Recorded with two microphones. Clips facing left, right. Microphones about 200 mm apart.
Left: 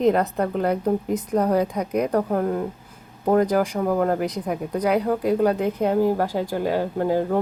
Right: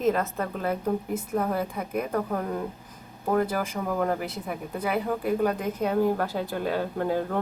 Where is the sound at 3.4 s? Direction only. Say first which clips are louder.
Left 7 dB; 15° left (ahead or behind).